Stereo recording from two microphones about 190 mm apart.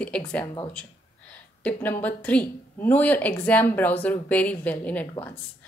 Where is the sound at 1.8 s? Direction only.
10° left (ahead or behind).